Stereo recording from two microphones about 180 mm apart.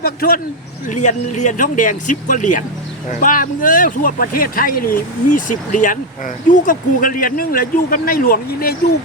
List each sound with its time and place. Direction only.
0.0 s speech: 55° left (ahead or behind)
0.9 s speech: 40° left (ahead or behind)